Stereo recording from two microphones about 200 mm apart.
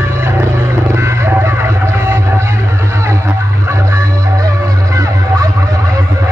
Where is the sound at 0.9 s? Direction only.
15° right (ahead or behind).